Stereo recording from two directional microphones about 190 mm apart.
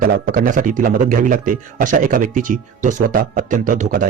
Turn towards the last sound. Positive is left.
turn(degrees=-45)  # may be behind; listen again after turning